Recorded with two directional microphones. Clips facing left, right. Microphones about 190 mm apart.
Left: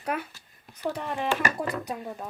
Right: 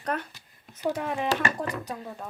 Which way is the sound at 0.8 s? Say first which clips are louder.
Right 2 dB; 5° right (ahead or behind).